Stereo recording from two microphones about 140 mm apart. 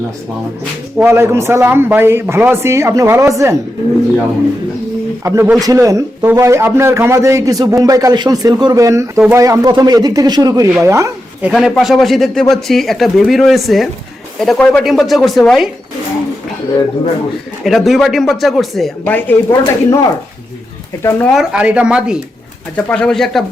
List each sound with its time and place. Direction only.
0.9 s a man's voice: 15° right (ahead or behind)
5.2 s a man's voice: 20° right (ahead or behind)
11.4 s speech: centre (ahead or behind)
17.6 s speech: centre (ahead or behind)
19.0 s speech: 15° left (ahead or behind)
21.3 s a man's voice: 10° right (ahead or behind)
22.7 s speech: 5° left (ahead or behind)